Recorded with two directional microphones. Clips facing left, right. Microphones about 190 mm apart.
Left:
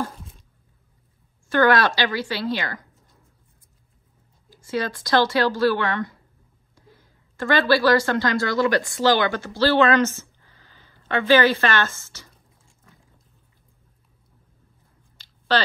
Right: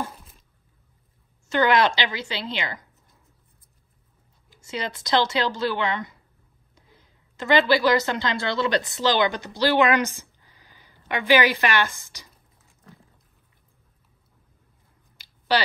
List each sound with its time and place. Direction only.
1.5 s speech: 20° right (ahead or behind)
4.6 s a woman's voice: 20° right (ahead or behind)
15.1 s a sound: 10° right (ahead or behind)